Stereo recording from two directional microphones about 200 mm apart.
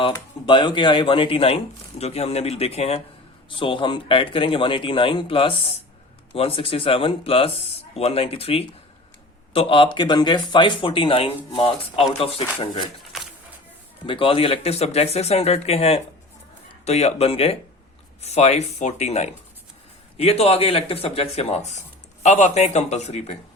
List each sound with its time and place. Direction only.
0.4 s speech: 25° left (ahead or behind)
14.1 s speech: 25° left (ahead or behind)